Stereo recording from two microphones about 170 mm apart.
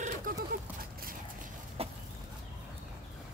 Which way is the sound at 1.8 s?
35° right (ahead or behind).